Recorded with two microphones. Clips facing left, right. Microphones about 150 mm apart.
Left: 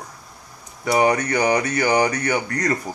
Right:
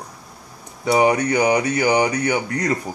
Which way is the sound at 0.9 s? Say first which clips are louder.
Right 2 dB; 15° right (ahead or behind).